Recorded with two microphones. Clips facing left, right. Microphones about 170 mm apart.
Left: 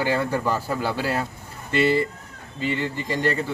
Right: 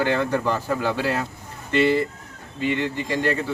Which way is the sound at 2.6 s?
60° right (ahead or behind).